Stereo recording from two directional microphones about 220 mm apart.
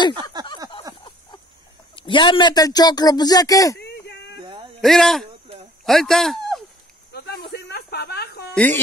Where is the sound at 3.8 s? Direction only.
50° left (ahead or behind).